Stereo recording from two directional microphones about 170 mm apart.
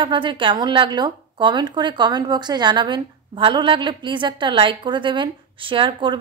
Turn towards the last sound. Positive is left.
turn(degrees=-30)  # may be behind; listen again after turning